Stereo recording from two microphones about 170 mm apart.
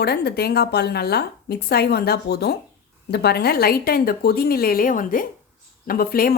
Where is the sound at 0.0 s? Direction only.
70° left (ahead or behind).